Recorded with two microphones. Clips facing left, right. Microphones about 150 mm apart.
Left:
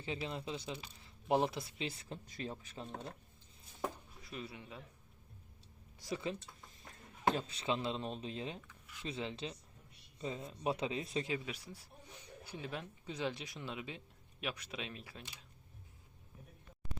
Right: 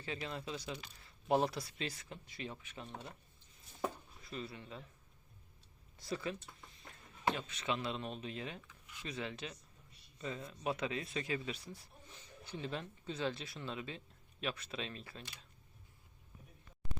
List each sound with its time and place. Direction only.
0.0 s speech: 25° left (ahead or behind); by 2.9 s 40° left (ahead or behind)
4.2 s a man's voice: 10° left (ahead or behind)
6.0 s speech: 15° left (ahead or behind)
7.3 s speech: 35° left (ahead or behind)
11.3 s speech: 10° left (ahead or behind)